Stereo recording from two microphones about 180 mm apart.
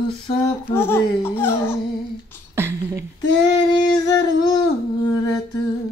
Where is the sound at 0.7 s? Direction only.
10° left (ahead or behind).